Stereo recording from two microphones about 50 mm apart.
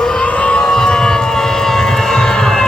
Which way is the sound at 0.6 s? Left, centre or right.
Centre.